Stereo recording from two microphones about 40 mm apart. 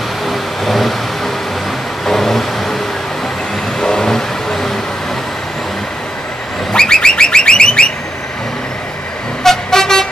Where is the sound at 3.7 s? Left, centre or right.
Centre.